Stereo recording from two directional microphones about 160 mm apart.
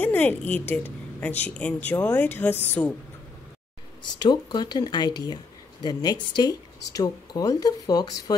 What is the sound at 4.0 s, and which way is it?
Speech, 25° left (ahead or behind).